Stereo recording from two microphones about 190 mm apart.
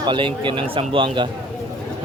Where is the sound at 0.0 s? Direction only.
25° right (ahead or behind).